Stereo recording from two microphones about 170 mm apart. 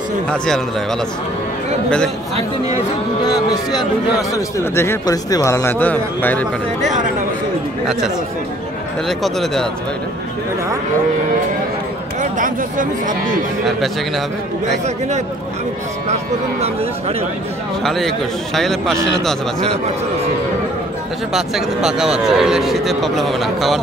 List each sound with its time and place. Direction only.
4.3 s speech: 15° left (ahead or behind)
9.2 s a man's voice: centre (ahead or behind)
12.2 s speech: 50° right (ahead or behind)
13.7 s a man's voice: centre (ahead or behind)
17.8 s a man's voice: centre (ahead or behind)
21.3 s a man's voice: centre (ahead or behind)